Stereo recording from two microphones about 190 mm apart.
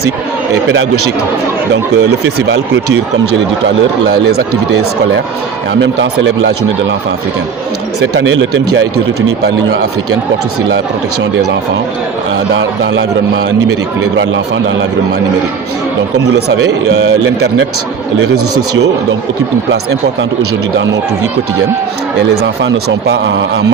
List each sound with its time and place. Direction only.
1.7 s speech: 70° right (ahead or behind)
4.1 s speech: 55° right (ahead or behind)
6.1 s speech: 70° right (ahead or behind)
8.1 s speech: 85° right
12.5 s speech: 70° right (ahead or behind)
14.2 s a man's voice: 80° right
16.3 s speech: 70° right (ahead or behind)
22.6 s speech: 65° right (ahead or behind)